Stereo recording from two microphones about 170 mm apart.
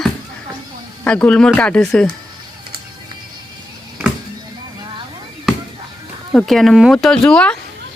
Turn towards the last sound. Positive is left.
turn(degrees=5)  # may be behind; listen again after turning